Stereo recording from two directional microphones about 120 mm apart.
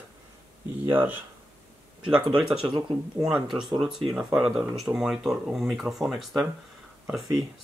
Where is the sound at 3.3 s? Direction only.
5° right (ahead or behind).